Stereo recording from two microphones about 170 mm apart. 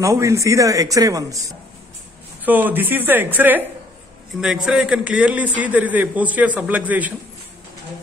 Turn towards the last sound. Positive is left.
turn(degrees=-10)  # may be behind; listen again after turning